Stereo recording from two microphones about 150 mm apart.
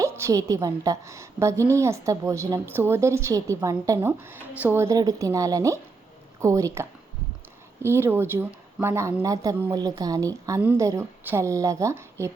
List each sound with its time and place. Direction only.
0.0 s a woman's voice: 20° right (ahead or behind)